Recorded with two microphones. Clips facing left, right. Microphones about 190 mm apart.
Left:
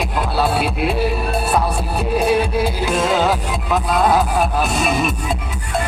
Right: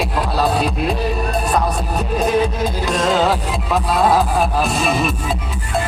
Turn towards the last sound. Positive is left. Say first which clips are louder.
# right 1 dB
turn(degrees=0)  # may be behind; listen again after turning